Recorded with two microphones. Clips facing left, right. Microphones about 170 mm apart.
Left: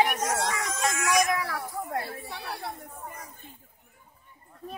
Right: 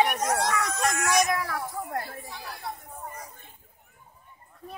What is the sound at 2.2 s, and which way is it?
Speech, 65° left (ahead or behind).